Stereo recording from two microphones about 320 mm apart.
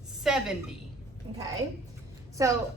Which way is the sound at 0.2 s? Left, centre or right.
Centre.